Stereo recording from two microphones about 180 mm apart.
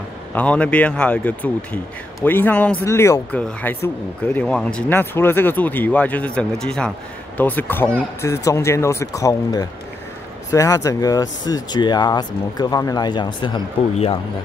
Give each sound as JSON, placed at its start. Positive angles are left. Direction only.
{"t": 0.3, "sound": "speech", "side_deg": 5}